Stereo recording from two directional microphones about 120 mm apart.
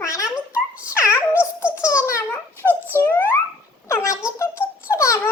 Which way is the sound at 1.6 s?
10° right (ahead or behind).